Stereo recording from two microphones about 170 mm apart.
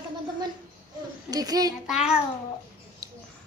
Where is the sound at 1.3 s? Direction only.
20° right (ahead or behind).